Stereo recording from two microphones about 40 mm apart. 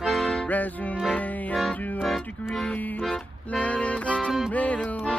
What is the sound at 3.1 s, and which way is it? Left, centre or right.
Accordion, left.